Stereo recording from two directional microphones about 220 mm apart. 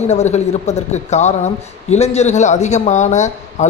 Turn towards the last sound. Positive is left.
turn(degrees=30)  # may be behind; listen again after turning